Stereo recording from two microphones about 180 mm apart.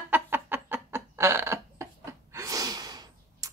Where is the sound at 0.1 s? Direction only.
10° right (ahead or behind).